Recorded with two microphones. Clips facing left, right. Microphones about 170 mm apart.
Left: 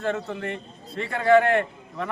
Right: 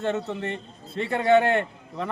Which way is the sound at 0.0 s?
25° right (ahead or behind).